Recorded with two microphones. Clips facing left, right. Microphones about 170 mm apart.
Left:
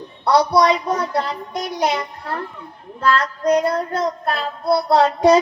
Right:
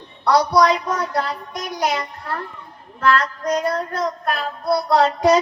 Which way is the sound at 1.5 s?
30° left (ahead or behind).